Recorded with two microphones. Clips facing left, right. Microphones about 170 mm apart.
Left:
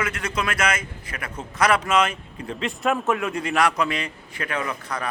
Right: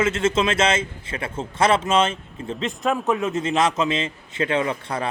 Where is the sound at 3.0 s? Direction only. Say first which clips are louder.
Right 2 dB; 20° right (ahead or behind).